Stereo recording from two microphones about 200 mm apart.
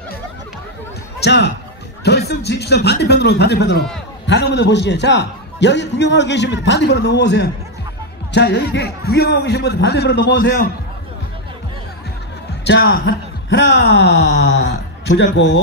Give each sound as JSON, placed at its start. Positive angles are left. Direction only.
{"t": 1.2, "sound": "a man's voice", "side_deg": 60}
{"t": 12.6, "sound": "a man's voice", "side_deg": 50}